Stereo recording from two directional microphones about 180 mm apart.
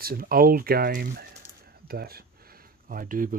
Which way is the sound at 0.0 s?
55° right (ahead or behind).